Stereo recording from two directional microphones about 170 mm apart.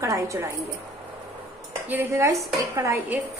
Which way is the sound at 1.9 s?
15° right (ahead or behind).